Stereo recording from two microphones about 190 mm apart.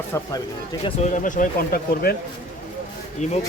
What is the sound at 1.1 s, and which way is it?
Speech, 45° left (ahead or behind).